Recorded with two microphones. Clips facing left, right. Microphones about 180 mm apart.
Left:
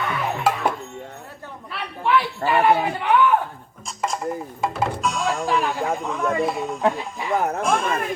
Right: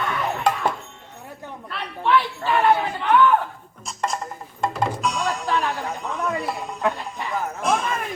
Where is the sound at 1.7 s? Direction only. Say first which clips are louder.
Even; 10° left (ahead or behind).